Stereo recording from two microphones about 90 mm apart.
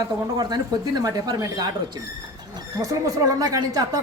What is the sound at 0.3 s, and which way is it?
Speech, 50° right (ahead or behind).